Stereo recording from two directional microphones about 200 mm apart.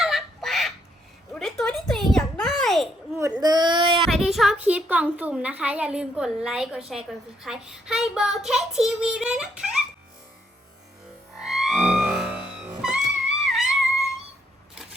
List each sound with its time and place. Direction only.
0.0 s goose: centre (ahead or behind)
1.3 s a sound: centre (ahead or behind)
3.4 s a sound: 20° right (ahead or behind)
4.1 s a woman's voice: centre (ahead or behind)
7.4 s child singing: centre (ahead or behind)
11.3 s music: centre (ahead or behind)